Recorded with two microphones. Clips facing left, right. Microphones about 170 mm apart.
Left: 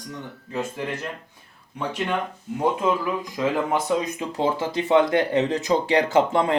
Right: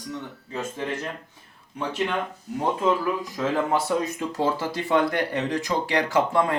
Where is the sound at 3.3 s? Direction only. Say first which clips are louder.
Left 2 dB; 15° left (ahead or behind).